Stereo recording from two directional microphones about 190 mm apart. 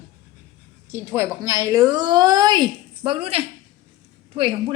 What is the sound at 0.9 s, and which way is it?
A woman's voice, 10° right (ahead or behind).